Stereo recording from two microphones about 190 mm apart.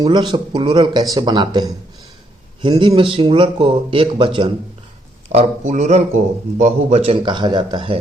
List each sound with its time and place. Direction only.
0.0 s speech: 25° right (ahead or behind)
5.3 s a man's voice: 35° right (ahead or behind)